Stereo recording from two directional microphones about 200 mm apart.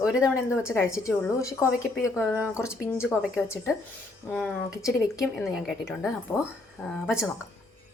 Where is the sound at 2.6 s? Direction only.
15° left (ahead or behind).